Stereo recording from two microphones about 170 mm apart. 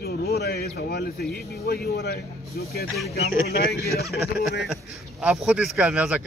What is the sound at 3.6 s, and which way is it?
Speech, 65° left (ahead or behind).